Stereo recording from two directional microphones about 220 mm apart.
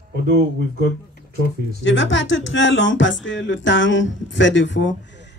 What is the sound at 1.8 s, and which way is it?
Speech, 55° left (ahead or behind).